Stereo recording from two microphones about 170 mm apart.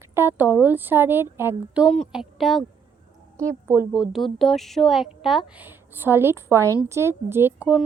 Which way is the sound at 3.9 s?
5° right (ahead or behind).